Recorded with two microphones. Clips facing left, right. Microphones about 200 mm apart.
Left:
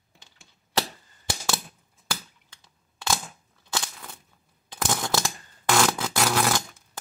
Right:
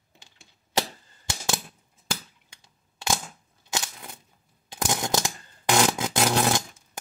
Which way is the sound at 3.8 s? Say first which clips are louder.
Even; 15° right (ahead or behind).